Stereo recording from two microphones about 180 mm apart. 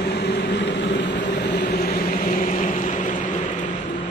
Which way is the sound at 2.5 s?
45° left (ahead or behind).